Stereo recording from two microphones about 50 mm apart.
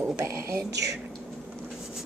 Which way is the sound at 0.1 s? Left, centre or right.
Right.